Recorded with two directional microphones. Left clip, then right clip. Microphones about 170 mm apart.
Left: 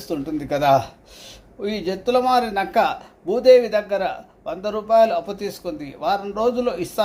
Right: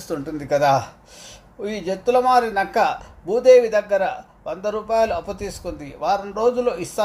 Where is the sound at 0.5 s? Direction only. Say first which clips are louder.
Even; 5° left (ahead or behind).